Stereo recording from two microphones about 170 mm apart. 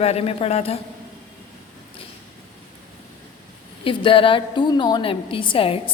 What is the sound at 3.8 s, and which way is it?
A woman's voice, 30° left (ahead or behind).